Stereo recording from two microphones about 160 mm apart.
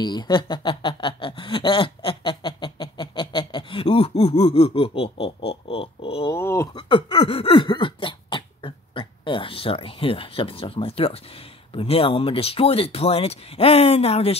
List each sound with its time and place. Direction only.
0.0 s speech: 25° left (ahead or behind)
5.5 s a sound: 35° left (ahead or behind)
6.3 s speech: 20° left (ahead or behind); by 14.4 s 40° left (ahead or behind)